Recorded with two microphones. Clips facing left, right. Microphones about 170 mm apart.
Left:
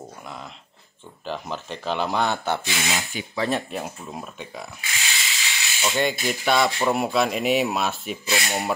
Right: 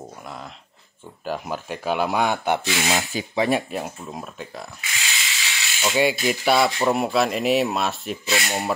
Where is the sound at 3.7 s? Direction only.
Centre (ahead or behind).